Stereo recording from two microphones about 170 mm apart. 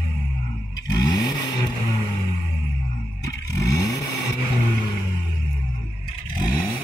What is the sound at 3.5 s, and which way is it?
Vehicle, 20° left (ahead or behind).